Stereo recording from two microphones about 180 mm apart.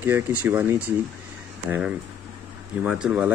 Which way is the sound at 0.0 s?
10° right (ahead or behind).